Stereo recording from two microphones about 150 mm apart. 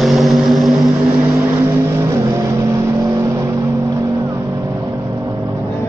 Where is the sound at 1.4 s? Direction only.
20° right (ahead or behind).